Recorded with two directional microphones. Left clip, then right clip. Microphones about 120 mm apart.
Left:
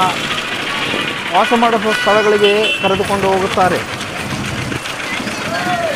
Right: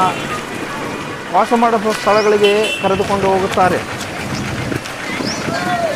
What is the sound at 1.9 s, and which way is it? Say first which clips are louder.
Speech: left 1 dB; 15° left (ahead or behind).